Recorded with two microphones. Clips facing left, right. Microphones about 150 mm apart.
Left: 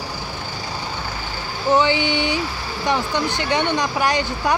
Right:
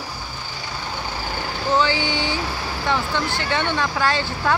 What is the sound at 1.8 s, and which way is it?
Speech, 20° left (ahead or behind).